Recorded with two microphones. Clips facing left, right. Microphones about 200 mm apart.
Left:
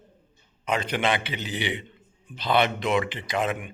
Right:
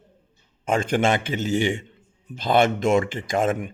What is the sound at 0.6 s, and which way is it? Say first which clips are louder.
Speech: right 5 dB; 45° right (ahead or behind).